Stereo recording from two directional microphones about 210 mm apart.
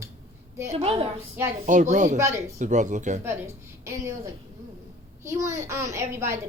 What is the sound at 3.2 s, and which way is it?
A child's voice, 10° right (ahead or behind).